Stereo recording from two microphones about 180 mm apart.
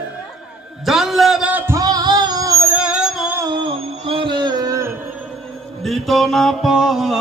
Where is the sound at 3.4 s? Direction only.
25° right (ahead or behind).